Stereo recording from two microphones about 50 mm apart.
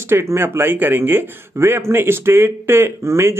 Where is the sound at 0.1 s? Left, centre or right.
Right.